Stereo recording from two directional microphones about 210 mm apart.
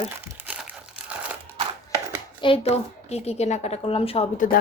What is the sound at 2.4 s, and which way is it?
A child's voice, 25° left (ahead or behind).